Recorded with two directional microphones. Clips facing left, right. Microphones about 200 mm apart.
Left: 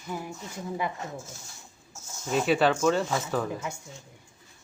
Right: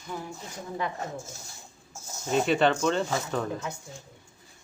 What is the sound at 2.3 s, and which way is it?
Speech, 5° left (ahead or behind).